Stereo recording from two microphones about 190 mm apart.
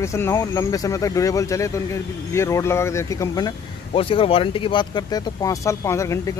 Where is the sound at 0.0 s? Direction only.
15° left (ahead or behind).